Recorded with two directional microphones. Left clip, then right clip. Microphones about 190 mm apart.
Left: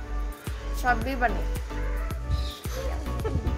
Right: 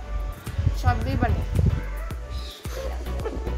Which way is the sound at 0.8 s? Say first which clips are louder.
Left 2 dB; 20° left (ahead or behind).